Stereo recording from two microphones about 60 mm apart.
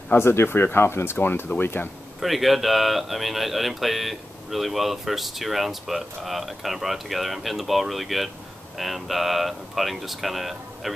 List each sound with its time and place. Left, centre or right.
0.2 s speech: left
2.2 s speech: centre